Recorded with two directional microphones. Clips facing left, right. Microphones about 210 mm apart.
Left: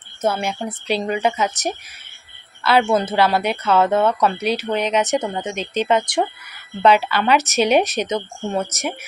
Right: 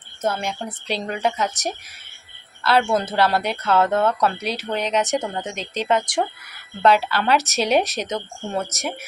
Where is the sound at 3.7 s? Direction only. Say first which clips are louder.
Left 2 dB; 20° left (ahead or behind).